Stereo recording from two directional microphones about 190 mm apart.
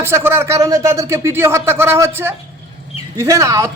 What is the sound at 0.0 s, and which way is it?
Speech, 10° right (ahead or behind).